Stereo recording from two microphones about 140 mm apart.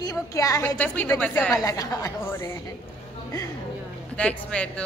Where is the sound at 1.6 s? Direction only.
25° left (ahead or behind).